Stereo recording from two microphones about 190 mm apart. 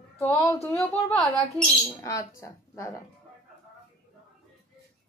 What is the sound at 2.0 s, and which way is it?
Speech, 15° left (ahead or behind).